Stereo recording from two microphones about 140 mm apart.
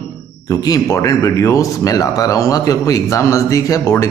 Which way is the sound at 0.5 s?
25° left (ahead or behind).